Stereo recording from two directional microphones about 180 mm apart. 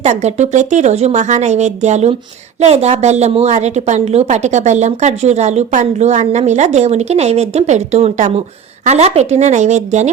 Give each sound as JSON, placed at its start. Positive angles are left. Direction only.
{"t": 0.0, "sound": "a woman's voice", "side_deg": -40}